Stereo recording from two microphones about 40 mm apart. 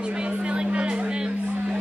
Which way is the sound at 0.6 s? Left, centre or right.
Right.